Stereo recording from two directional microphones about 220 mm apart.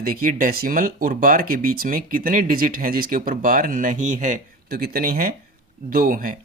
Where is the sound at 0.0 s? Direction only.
40° right (ahead or behind).